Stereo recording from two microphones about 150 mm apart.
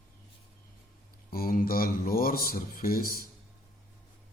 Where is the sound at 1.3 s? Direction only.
75° left (ahead or behind).